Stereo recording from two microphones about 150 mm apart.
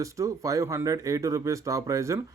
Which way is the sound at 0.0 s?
20° right (ahead or behind).